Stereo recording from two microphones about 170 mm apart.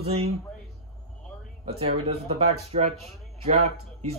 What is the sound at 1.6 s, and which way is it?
Speech, 35° right (ahead or behind).